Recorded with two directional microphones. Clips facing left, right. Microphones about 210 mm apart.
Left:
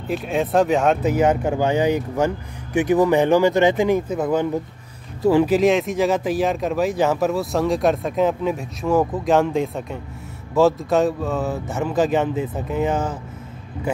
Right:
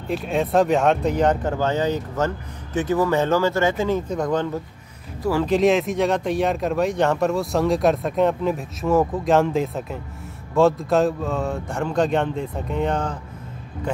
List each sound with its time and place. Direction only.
0.1 s speech: centre (ahead or behind)
5.2 s speech: 20° left (ahead or behind)
5.5 s speech: centre (ahead or behind)